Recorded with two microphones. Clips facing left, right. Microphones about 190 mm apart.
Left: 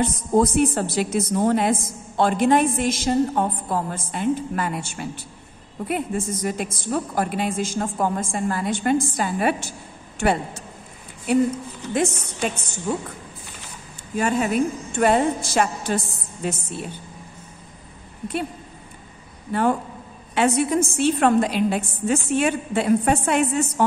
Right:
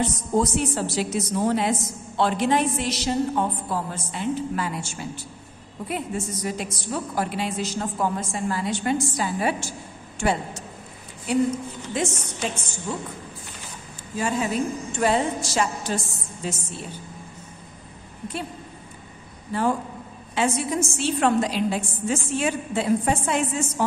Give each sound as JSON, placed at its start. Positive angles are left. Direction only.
{"t": 0.0, "sound": "a woman's voice", "side_deg": 55}
{"t": 14.1, "sound": "a woman's voice", "side_deg": 60}
{"t": 20.3, "sound": "a woman's voice", "side_deg": 60}